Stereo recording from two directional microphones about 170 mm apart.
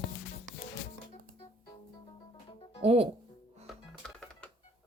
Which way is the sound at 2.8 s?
35° right (ahead or behind).